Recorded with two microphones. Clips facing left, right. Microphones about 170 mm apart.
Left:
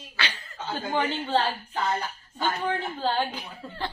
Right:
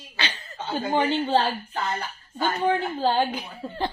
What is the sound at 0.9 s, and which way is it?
Speech, 15° right (ahead or behind).